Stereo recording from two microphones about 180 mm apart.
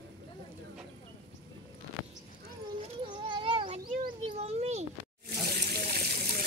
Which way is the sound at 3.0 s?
25° right (ahead or behind).